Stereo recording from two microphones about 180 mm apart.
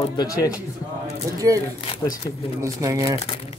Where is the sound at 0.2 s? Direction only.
20° left (ahead or behind).